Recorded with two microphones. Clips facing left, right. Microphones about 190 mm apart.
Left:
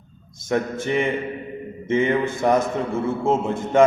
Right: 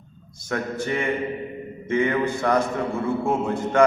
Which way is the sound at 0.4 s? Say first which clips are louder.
Left 4 dB; 20° left (ahead or behind).